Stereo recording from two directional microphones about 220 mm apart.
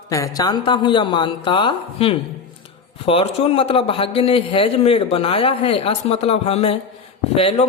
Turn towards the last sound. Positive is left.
turn(degrees=25)  # may be behind; listen again after turning